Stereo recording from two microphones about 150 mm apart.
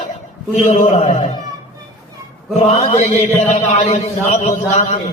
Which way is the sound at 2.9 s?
50° left (ahead or behind).